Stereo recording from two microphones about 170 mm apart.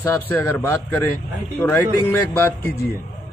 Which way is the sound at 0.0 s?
15° left (ahead or behind).